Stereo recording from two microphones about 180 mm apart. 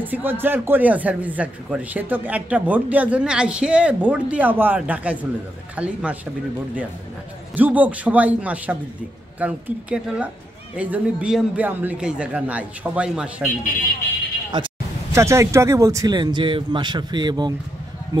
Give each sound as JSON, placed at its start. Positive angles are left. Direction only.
{"t": 0.0, "sound": "speech", "side_deg": -10}
{"t": 7.5, "sound": "speech", "side_deg": -10}
{"t": 14.5, "sound": "speech", "side_deg": -25}